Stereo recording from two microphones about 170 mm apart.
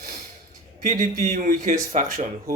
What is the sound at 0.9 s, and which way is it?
Speech, 55° right (ahead or behind).